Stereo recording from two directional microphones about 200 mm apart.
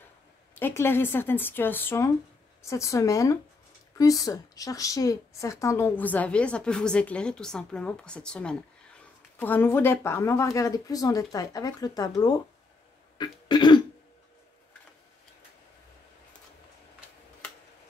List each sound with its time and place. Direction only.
0.6 s a woman's voice: 10° left (ahead or behind)
13.2 s throat clearing: 20° left (ahead or behind)